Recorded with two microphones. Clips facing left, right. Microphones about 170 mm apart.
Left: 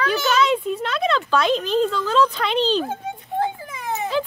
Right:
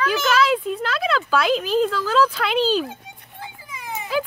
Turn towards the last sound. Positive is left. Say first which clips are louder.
# left 1 dB
turn(degrees=-5)  # may be behind; listen again after turning